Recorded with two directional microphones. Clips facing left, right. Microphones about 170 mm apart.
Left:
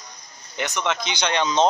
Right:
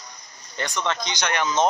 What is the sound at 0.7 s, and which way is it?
Speech, 15° left (ahead or behind).